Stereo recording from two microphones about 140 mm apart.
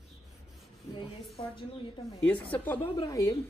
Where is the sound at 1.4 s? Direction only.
30° left (ahead or behind).